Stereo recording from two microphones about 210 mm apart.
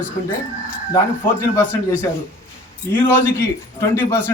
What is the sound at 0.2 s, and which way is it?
Speech, 45° left (ahead or behind).